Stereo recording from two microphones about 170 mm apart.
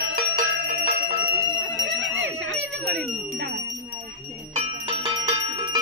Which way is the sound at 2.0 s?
90° right.